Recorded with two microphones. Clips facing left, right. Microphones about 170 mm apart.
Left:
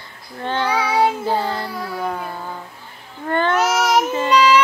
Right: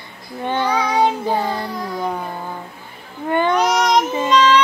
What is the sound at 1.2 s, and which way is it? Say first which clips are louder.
Child singing: right 1 dB; 15° right (ahead or behind).